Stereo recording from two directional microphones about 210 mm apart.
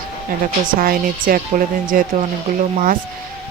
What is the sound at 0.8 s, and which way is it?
Speech, 45° right (ahead or behind).